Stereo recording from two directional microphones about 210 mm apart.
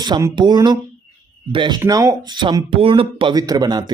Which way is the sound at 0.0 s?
15° right (ahead or behind).